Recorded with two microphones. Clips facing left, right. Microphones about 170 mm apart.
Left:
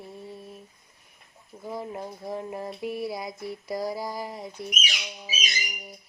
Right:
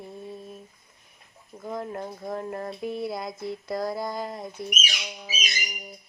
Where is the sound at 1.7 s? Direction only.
10° left (ahead or behind).